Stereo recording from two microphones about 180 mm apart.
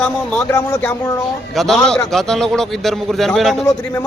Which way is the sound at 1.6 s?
5° left (ahead or behind).